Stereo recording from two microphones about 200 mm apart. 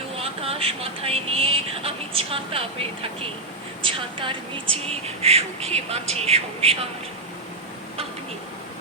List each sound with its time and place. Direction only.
0.2 s speech: 30° right (ahead or behind)